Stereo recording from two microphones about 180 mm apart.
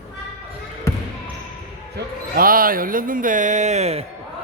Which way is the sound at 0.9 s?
15° left (ahead or behind).